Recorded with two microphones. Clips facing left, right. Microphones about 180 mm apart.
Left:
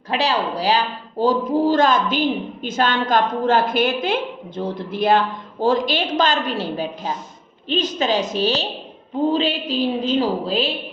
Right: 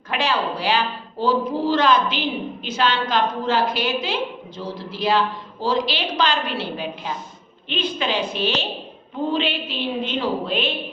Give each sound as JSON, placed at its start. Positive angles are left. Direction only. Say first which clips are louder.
{"t": 0.1, "sound": "a woman's voice", "louder": "left 2 dB", "side_deg": 35}